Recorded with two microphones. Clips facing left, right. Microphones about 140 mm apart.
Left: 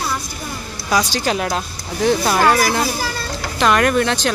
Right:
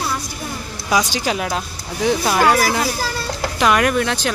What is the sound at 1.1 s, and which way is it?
Speech, 5° right (ahead or behind).